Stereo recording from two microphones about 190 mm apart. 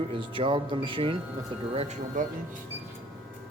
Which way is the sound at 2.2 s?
45° right (ahead or behind).